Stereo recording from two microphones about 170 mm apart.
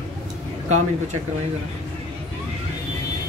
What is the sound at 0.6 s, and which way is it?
Speech, 45° right (ahead or behind).